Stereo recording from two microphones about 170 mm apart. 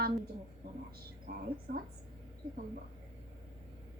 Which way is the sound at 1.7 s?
55° right (ahead or behind).